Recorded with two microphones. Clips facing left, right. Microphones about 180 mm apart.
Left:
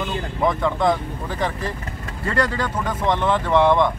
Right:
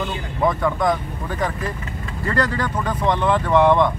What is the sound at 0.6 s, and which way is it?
Speech, 25° left (ahead or behind).